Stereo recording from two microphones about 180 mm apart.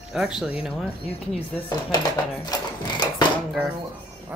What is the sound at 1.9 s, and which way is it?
Speech, 25° left (ahead or behind).